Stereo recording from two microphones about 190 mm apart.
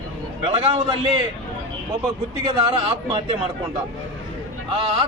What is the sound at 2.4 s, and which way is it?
Speech, 25° right (ahead or behind).